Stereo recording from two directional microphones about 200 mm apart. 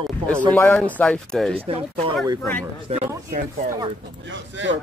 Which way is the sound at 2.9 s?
30° right (ahead or behind).